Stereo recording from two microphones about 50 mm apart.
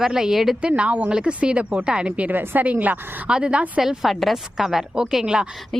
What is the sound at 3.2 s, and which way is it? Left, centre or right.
Speech, right.